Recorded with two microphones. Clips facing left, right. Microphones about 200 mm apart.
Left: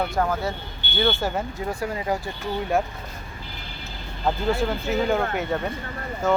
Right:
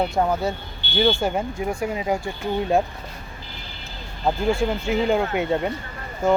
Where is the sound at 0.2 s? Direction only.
20° right (ahead or behind).